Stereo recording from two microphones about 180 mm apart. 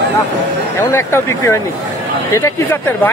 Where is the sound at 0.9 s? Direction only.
15° left (ahead or behind).